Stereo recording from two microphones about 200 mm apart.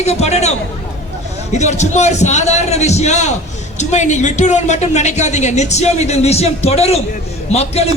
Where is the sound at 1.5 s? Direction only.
35° left (ahead or behind).